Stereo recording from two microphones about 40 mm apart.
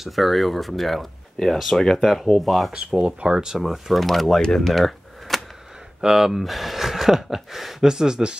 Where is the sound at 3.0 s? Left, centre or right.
Right.